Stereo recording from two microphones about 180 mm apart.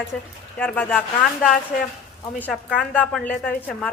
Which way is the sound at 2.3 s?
5° left (ahead or behind).